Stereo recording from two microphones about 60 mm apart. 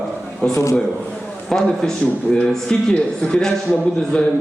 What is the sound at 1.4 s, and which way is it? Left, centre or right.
A man's voice, centre.